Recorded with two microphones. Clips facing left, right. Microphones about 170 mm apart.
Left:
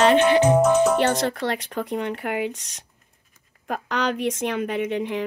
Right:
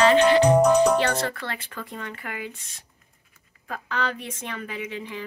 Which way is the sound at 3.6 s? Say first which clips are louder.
Left 4 dB; 75° left (ahead or behind).